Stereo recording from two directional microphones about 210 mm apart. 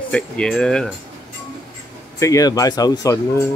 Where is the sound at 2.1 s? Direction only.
15° left (ahead or behind).